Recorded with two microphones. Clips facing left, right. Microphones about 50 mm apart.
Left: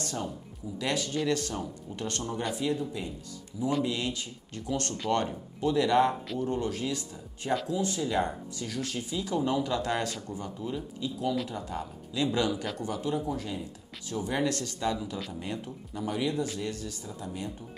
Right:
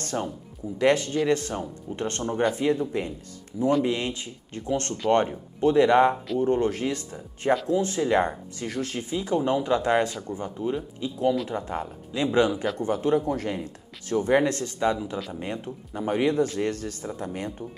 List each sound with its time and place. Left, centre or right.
0.0 s speech: right